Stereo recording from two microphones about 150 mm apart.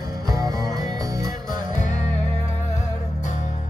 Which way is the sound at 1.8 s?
55° left (ahead or behind).